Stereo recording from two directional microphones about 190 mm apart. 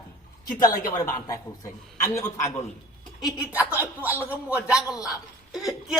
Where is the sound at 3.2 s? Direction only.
5° right (ahead or behind).